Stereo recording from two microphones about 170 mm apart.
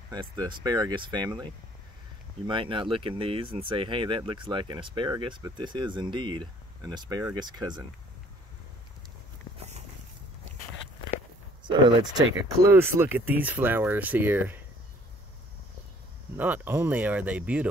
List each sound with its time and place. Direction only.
0.1 s speech: 25° right (ahead or behind)
11.6 s speech: 25° right (ahead or behind)
16.3 s speech: 10° right (ahead or behind)